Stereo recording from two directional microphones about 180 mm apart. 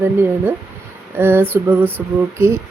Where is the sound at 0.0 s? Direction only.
10° right (ahead or behind).